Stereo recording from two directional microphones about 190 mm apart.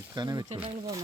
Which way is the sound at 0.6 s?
30° right (ahead or behind).